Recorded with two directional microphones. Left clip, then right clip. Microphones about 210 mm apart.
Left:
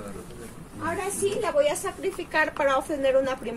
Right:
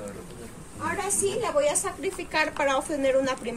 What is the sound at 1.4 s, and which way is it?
A woman's voice, 30° right (ahead or behind).